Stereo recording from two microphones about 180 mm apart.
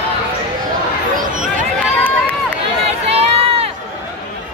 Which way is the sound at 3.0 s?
35° right (ahead or behind).